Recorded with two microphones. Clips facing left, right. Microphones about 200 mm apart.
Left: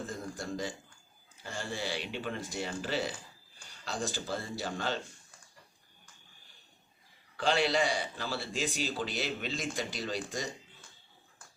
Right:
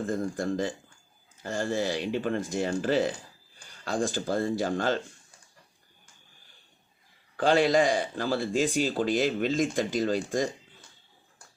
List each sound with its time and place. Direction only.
0.0 s speech: 50° right (ahead or behind)
7.3 s speech: 50° right (ahead or behind)